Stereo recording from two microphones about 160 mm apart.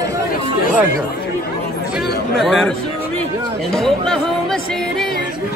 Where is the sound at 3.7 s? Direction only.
5° left (ahead or behind).